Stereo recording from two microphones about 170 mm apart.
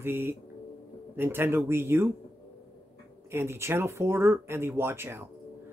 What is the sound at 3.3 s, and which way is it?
Speech, 15° right (ahead or behind).